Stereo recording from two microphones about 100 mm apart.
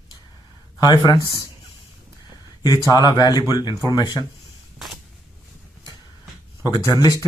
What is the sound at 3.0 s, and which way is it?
Speech, 45° left (ahead or behind).